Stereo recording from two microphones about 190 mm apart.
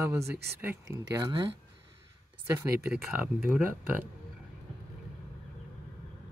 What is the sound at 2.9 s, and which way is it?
Speech, 5° right (ahead or behind).